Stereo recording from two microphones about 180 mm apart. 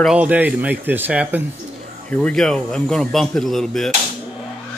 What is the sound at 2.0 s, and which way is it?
A man's voice, 5° left (ahead or behind).